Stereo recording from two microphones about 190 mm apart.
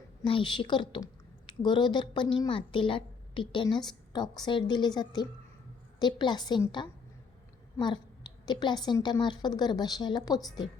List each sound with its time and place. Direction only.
0.3 s a woman's voice: 25° left (ahead or behind)
8.4 s a woman's voice: 20° left (ahead or behind)